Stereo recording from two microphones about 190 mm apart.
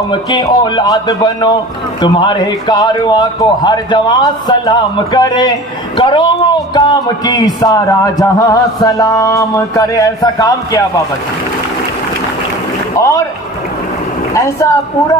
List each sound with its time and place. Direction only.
0.1 s a man's voice: 25° left (ahead or behind)
12.9 s a sound: 15° left (ahead or behind)
14.3 s speech: 15° left (ahead or behind)